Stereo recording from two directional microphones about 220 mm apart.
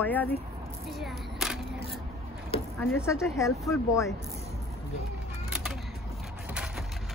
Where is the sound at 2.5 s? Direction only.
25° left (ahead or behind).